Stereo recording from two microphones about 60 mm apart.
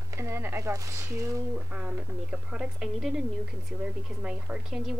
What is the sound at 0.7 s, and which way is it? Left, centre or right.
Speech, right.